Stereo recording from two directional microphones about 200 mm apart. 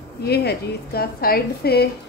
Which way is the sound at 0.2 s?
55° left (ahead or behind).